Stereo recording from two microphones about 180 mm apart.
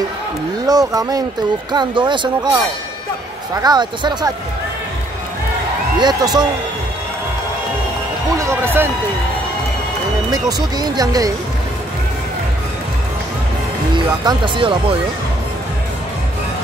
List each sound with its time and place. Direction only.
0.7 s speech: 20° right (ahead or behind)
5.9 s speech: 20° right (ahead or behind)
8.4 s speech: 15° right (ahead or behind)
10.3 s speech: 20° right (ahead or behind)
13.9 s speech: 25° right (ahead or behind)